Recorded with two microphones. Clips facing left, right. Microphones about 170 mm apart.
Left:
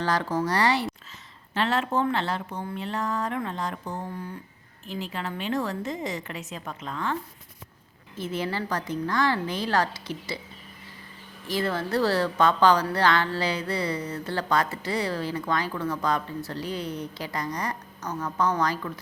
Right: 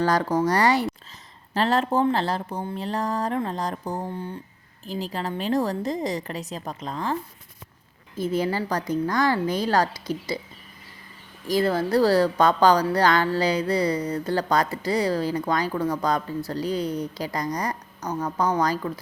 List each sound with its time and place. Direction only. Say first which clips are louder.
0.0 s a woman's voice: right 4 dB; 40° right (ahead or behind); by 4.4 s 25° right (ahead or behind)
4.9 s a woman's voice: right 4 dB; 35° right (ahead or behind)
8.2 s a woman's voice: right 5 dB; 40° right (ahead or behind)
11.4 s a woman's voice: right 5 dB; 40° right (ahead or behind)